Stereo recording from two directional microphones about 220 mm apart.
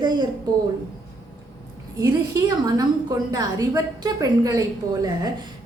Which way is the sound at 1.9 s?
15° right (ahead or behind).